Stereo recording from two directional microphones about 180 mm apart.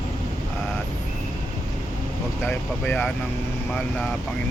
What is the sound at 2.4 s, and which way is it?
Speech, 10° left (ahead or behind).